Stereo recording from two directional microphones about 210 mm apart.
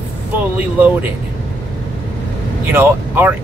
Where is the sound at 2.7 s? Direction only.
10° right (ahead or behind).